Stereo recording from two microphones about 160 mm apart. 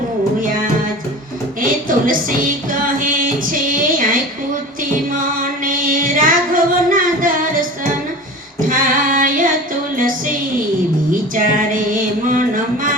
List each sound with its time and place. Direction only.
1.6 s a sound: 60° right (ahead or behind)
2.6 s music: 60° right (ahead or behind)
5.6 s singing: 60° right (ahead or behind)
8.7 s carnatic music: 55° right (ahead or behind)
9.9 s music: 55° right (ahead or behind)
11.1 s a sound: 60° right (ahead or behind)